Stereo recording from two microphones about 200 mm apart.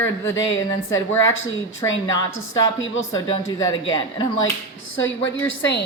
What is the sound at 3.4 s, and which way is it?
Speech, 85° left.